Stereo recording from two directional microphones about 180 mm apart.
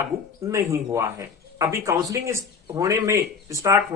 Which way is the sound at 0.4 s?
15° right (ahead or behind).